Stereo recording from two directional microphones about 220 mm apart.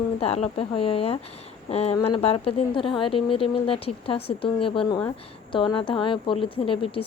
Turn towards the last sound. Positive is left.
turn(degrees=25)  # may be behind; listen again after turning